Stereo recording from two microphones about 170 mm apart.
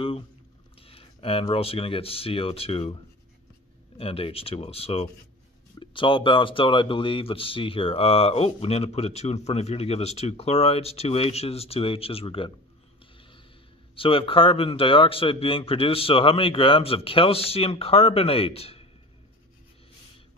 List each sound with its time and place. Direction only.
0.7 s speech: 35° left (ahead or behind)
4.0 s speech: 35° left (ahead or behind)
13.9 s speech: 30° left (ahead or behind)